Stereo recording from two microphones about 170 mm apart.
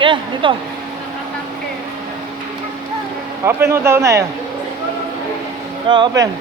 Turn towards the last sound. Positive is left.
turn(degrees=-25)  # may be behind; listen again after turning